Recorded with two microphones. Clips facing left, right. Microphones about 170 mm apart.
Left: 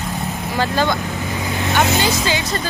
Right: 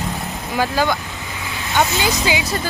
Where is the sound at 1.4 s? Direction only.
40° left (ahead or behind).